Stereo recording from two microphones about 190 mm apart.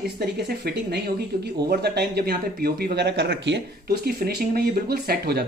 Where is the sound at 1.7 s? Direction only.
55° right (ahead or behind).